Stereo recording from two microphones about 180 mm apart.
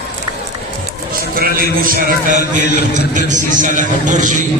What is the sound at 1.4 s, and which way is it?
A man's voice, 55° right (ahead or behind).